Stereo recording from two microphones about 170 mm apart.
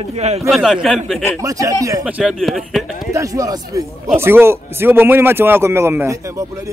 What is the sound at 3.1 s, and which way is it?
Speech, 20° right (ahead or behind).